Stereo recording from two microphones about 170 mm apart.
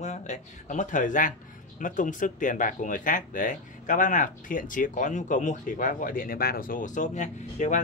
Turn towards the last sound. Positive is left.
turn(degrees=45)  # may be behind; listen again after turning